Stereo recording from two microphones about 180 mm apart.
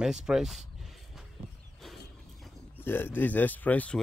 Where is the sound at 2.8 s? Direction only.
10° left (ahead or behind).